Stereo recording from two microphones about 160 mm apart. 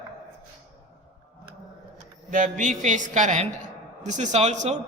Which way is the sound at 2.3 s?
55° right (ahead or behind).